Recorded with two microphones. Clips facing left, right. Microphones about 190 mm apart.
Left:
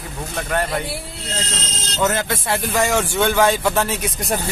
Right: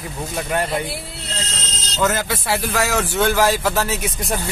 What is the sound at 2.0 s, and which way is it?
Speech, centre (ahead or behind).